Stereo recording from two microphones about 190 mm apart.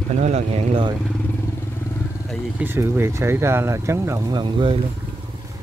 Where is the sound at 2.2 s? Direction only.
10° right (ahead or behind); by 4.7 s 25° right (ahead or behind).